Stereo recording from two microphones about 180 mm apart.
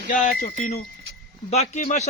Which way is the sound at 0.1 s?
50° left (ahead or behind).